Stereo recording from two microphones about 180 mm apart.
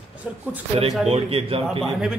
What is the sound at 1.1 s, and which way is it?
Speech, 30° right (ahead or behind).